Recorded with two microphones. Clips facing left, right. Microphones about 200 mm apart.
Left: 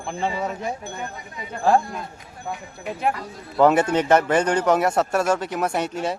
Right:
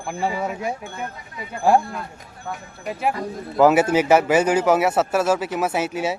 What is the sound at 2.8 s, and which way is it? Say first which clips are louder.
Speech: right 1 dB; 5° right (ahead or behind).